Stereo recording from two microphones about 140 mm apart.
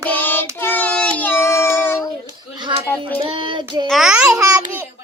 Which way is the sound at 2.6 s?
35° right (ahead or behind).